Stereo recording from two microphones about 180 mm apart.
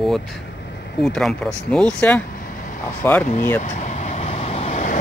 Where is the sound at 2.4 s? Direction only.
50° left (ahead or behind).